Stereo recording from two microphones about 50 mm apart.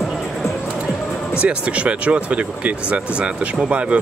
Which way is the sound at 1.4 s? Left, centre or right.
Right.